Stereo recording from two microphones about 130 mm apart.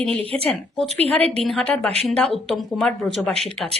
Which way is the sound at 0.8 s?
55° right (ahead or behind).